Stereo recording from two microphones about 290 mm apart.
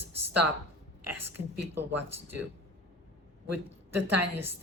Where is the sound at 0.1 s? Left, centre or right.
Right.